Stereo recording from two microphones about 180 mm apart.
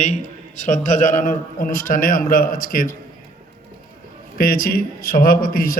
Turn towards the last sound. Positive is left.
turn(degrees=55)  # may be behind; listen again after turning